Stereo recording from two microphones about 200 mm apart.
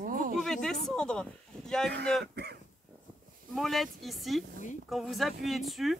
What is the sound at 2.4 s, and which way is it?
Speech, 55° right (ahead or behind).